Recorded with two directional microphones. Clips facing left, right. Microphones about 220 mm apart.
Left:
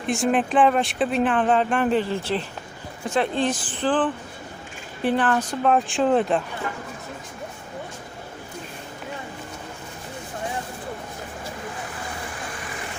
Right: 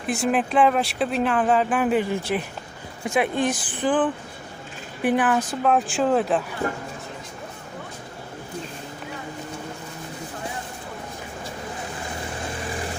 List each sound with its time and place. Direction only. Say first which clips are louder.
0.1 s speech: left 1 dB; centre (ahead or behind)
6.6 s speech: right 4 dB; 45° right (ahead or behind)